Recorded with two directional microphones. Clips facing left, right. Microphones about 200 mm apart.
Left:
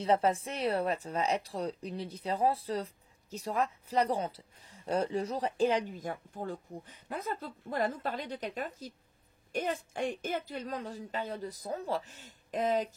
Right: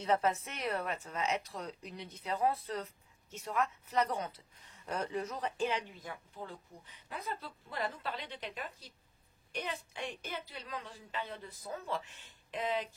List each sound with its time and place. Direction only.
0.0 s a woman's voice: 30° left (ahead or behind)